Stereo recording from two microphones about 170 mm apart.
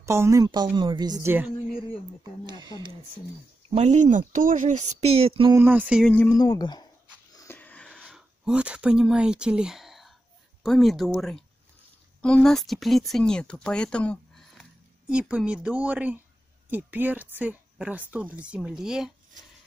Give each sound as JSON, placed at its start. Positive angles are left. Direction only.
{"t": 0.0, "sound": "speech", "side_deg": -15}
{"t": 2.4, "sound": "a sound", "side_deg": -25}
{"t": 3.7, "sound": "speech", "side_deg": -40}
{"t": 5.5, "sound": "a woman's voice", "side_deg": -10}
{"t": 6.0, "sound": "speech", "side_deg": 10}
{"t": 6.3, "sound": "speech", "side_deg": 20}
{"t": 7.4, "sound": "a sound", "side_deg": 10}
{"t": 10.6, "sound": "a woman's voice", "side_deg": 0}